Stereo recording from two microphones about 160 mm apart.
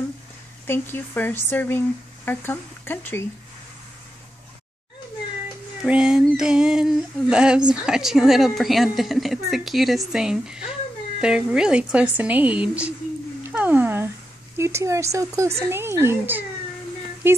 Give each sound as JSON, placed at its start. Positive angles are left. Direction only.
{"t": 0.7, "sound": "speech", "side_deg": 15}
{"t": 5.9, "sound": "female singing", "side_deg": -5}
{"t": 11.1, "sound": "a woman's voice", "side_deg": -5}
{"t": 13.4, "sound": "dog", "side_deg": -10}
{"t": 14.6, "sound": "a woman's voice", "side_deg": -15}